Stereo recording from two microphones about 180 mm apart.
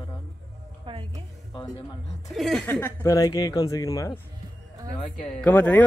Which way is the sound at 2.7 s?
10° left (ahead or behind).